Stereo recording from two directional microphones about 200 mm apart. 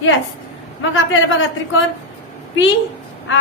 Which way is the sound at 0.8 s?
75° left (ahead or behind).